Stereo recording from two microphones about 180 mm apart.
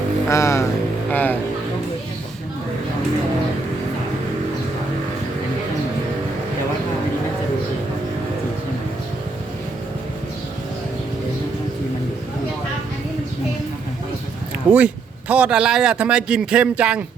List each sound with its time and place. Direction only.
0.3 s speech: 15° left (ahead or behind)
1.1 s music: 10° left (ahead or behind)
14.7 s a sound: 10° right (ahead or behind)
15.3 s a man's voice: 5° right (ahead or behind)